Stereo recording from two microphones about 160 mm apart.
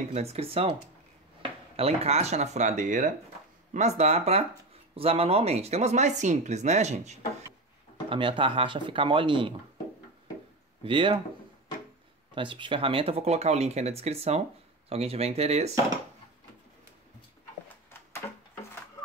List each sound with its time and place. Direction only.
0.1 s speech: 40° right (ahead or behind)
8.1 s speech: 30° right (ahead or behind)
10.8 s speech: 30° right (ahead or behind)
12.4 s speech: 30° right (ahead or behind)